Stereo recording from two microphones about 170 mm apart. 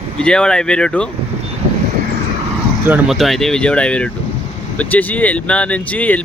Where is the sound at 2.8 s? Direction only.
10° right (ahead or behind).